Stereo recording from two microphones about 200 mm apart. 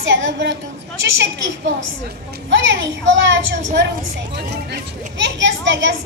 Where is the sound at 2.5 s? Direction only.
65° right (ahead or behind).